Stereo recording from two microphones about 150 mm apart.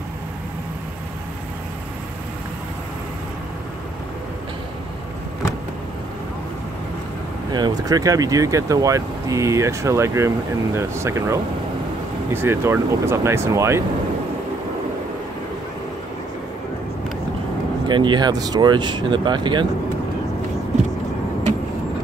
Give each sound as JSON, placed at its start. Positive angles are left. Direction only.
{"t": 7.5, "sound": "speech", "side_deg": -25}
{"t": 17.8, "sound": "speech", "side_deg": -30}